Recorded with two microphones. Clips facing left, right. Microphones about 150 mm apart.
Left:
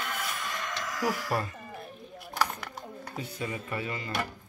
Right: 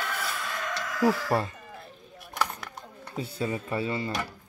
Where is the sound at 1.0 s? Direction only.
30° right (ahead or behind).